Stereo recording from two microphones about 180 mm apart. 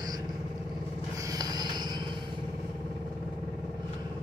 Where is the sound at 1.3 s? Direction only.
20° right (ahead or behind).